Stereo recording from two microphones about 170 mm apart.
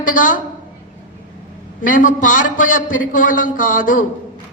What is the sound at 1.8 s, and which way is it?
A woman's voice, 50° left (ahead or behind).